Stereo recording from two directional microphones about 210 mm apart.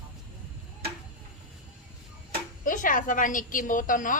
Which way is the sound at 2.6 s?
40° left (ahead or behind).